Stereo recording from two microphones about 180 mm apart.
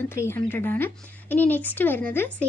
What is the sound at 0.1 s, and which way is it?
Speech, 15° left (ahead or behind).